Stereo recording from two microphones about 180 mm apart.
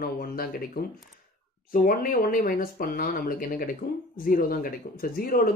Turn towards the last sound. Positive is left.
turn(degrees=55)  # may be behind; listen again after turning